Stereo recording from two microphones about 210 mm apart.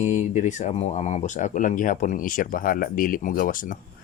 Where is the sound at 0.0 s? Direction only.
35° left (ahead or behind).